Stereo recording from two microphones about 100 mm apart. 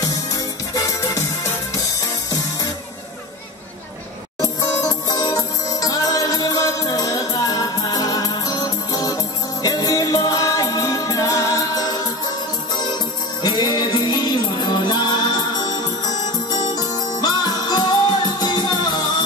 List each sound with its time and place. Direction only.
0.0 s music: 35° left (ahead or behind)
4.4 s music: 35° left (ahead or behind)
13.4 s music: 45° left (ahead or behind)